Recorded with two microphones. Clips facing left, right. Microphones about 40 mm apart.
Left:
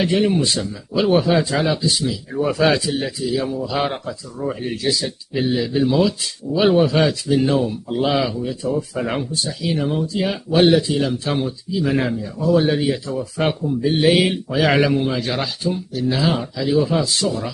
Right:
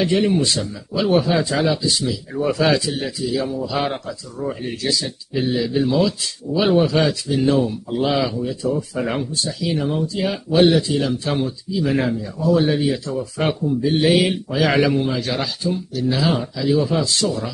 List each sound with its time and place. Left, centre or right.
0.0 s speech: centre
10.9 s speech: centre
17.2 s speech: centre